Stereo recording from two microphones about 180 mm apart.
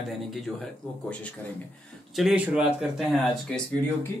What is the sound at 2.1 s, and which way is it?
Speech, 5° right (ahead or behind).